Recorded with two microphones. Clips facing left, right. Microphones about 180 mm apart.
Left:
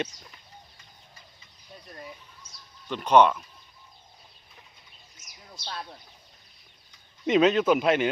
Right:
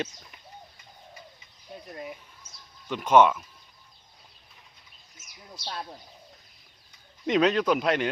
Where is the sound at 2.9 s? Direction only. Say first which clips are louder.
Even; 10° right (ahead or behind).